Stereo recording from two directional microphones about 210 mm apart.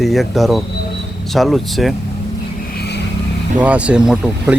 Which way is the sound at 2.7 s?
50° left (ahead or behind).